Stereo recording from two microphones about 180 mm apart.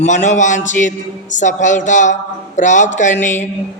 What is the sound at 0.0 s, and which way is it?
A man's voice, 40° left (ahead or behind).